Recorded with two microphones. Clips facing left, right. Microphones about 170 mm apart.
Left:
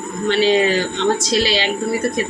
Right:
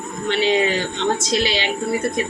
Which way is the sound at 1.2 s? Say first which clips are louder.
Left 2 dB; 20° right (ahead or behind).